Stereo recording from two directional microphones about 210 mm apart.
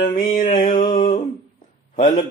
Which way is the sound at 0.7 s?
40° left (ahead or behind).